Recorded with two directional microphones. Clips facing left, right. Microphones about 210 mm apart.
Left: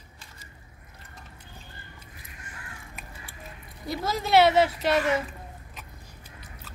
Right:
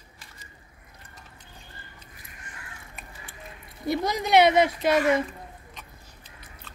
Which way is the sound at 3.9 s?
15° right (ahead or behind).